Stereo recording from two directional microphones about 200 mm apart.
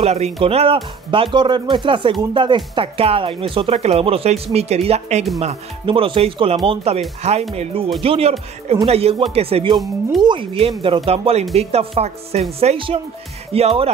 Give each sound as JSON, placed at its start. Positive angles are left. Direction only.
{"t": 0.0, "sound": "speech", "side_deg": -30}